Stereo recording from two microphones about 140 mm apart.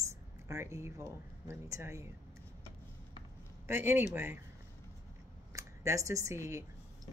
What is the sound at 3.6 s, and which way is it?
Speech, 15° right (ahead or behind).